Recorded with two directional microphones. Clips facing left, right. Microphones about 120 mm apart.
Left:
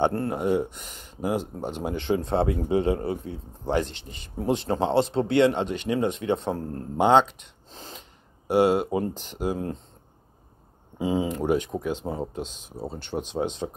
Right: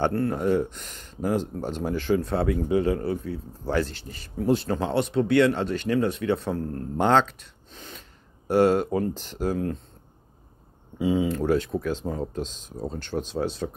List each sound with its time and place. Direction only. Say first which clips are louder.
0.0 s speech: even; 20° left (ahead or behind)
7.0 s speech: left 2 dB; 15° left (ahead or behind)
8.5 s speech: right 1 dB; 15° left (ahead or behind)
11.0 s speech: right 2 dB; 25° left (ahead or behind)